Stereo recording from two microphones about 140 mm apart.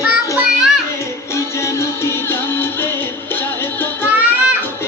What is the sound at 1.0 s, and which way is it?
Music, 20° left (ahead or behind).